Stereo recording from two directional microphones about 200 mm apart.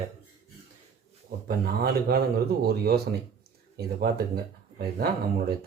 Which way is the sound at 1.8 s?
50° right (ahead or behind).